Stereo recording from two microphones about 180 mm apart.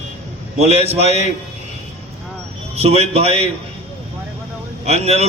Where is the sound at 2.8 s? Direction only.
35° right (ahead or behind).